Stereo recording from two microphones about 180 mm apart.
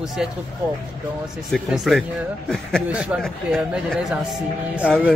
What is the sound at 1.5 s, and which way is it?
Speech, centre (ahead or behind).